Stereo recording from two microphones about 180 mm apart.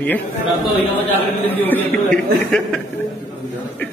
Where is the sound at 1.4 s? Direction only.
10° left (ahead or behind).